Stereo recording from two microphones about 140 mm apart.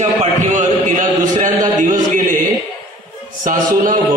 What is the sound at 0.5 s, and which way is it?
Speech, 65° right (ahead or behind).